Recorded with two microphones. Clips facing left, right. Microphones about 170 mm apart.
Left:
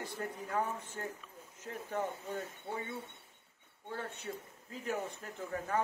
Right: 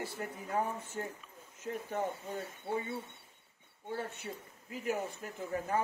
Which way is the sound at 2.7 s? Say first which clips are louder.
Right 7 dB; 10° right (ahead or behind).